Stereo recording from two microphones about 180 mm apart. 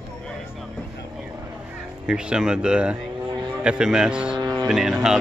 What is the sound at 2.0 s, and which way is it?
Speech, 5° right (ahead or behind).